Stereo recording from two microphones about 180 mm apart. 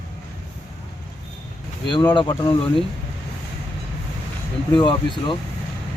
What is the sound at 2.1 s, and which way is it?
Speech, 25° left (ahead or behind).